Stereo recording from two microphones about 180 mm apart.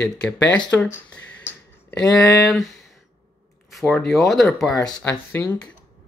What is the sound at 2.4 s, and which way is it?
Speech, centre (ahead or behind).